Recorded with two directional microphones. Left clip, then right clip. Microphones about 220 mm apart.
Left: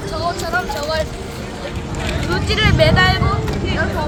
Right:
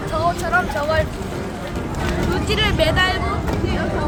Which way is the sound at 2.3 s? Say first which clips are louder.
Left 4 dB; 25° left (ahead or behind).